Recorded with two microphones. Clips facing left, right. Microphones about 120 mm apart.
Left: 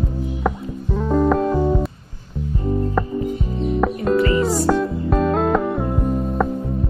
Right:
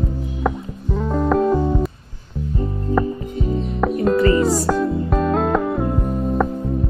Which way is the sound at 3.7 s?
Centre (ahead or behind).